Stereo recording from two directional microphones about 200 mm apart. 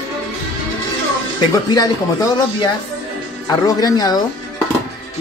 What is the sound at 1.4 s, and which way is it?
Speech, 20° left (ahead or behind).